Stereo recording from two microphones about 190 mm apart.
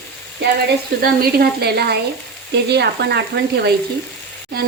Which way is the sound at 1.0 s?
55° right (ahead or behind).